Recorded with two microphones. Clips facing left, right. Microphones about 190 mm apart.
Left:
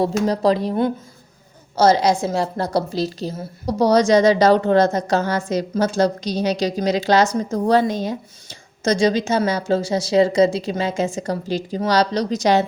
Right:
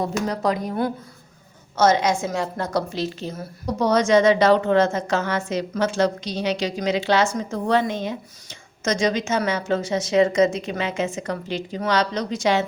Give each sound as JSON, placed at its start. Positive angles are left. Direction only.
{"t": 0.0, "sound": "a woman's voice", "side_deg": 30}